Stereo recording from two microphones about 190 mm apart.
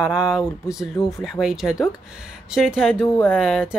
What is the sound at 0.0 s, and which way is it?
Speech, 5° right (ahead or behind).